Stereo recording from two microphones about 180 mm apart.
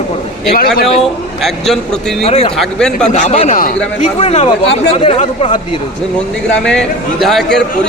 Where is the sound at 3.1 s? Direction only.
40° left (ahead or behind).